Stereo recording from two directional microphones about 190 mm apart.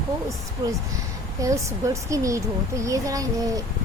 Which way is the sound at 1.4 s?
15° right (ahead or behind).